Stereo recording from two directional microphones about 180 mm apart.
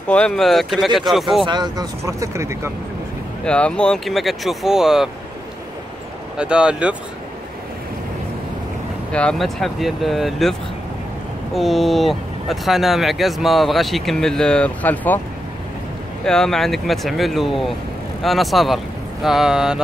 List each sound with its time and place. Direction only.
0.1 s speech: 5° left (ahead or behind)
1.4 s speech: 25° right (ahead or behind)
3.4 s speech: 5° left (ahead or behind)
6.3 s speech: 5° right (ahead or behind)
9.1 s speech: 5° left (ahead or behind)
11.5 s speech: centre (ahead or behind)
16.3 s speech: 5° left (ahead or behind)